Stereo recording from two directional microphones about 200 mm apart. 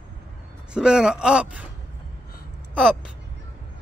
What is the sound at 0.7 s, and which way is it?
Speech, 5° right (ahead or behind).